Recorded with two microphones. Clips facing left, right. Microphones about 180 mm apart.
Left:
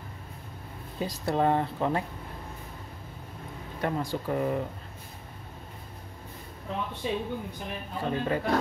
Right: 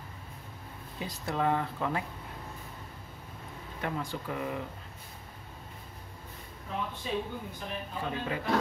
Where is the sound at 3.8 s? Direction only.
35° left (ahead or behind).